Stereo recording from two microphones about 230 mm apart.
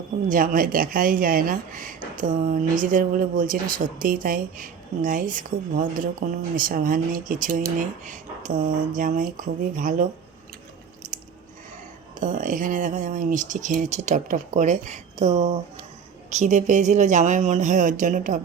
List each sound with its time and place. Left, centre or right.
0.3 s speech: right
11.0 s biting: right
12.2 s speech: right